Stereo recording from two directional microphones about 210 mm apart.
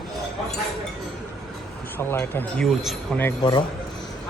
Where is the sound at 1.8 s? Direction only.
10° left (ahead or behind).